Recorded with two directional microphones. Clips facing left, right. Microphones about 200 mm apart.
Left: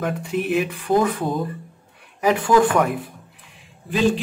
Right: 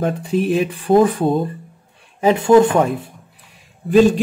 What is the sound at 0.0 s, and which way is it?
Speech, 30° right (ahead or behind).